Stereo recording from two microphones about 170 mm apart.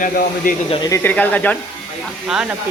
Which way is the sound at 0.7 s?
25° left (ahead or behind).